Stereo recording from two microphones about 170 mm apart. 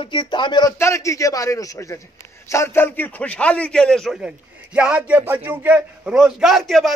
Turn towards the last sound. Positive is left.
turn(degrees=0)  # may be behind; listen again after turning